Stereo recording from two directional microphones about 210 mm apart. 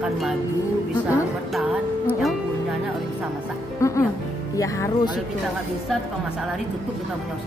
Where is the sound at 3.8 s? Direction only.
15° left (ahead or behind).